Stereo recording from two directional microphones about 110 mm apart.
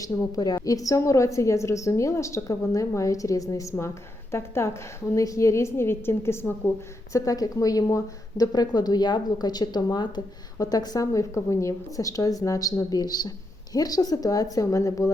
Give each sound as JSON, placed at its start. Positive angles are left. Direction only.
{"t": 0.0, "sound": "a woman's voice", "side_deg": 35}
{"t": 7.1, "sound": "a woman's voice", "side_deg": 30}